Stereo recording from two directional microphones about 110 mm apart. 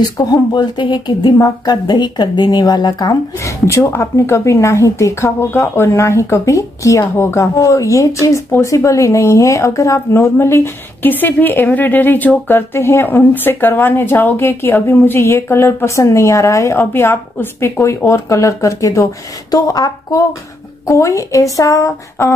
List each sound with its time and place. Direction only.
0.2 s a woman's voice: 35° left (ahead or behind)